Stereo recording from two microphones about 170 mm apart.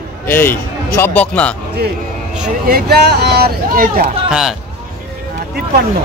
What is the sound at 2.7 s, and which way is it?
Speech, 70° right (ahead or behind).